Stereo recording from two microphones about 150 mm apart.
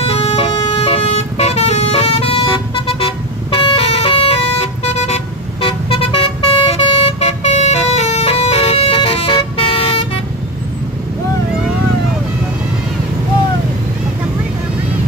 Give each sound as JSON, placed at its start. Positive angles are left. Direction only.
{"t": 0.0, "sound": "vehicle", "side_deg": 45}
{"t": 0.5, "sound": "emergency vehicle", "side_deg": 25}
{"t": 0.7, "sound": "vehicle", "side_deg": 45}